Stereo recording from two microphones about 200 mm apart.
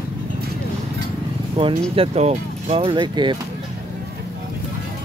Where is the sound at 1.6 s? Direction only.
25° right (ahead or behind).